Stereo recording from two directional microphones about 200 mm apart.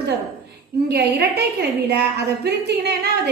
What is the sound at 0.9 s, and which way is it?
Speech, 55° right (ahead or behind).